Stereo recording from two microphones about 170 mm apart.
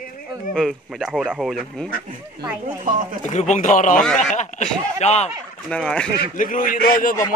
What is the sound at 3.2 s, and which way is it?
Speech, 45° left (ahead or behind).